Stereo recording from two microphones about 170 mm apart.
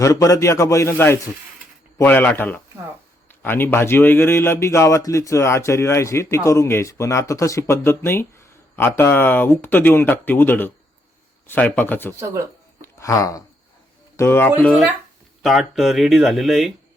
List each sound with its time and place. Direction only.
0.0 s a man's voice: 20° left (ahead or behind)
12.8 s a sound: 20° left (ahead or behind)
14.2 s a man's voice: 15° left (ahead or behind)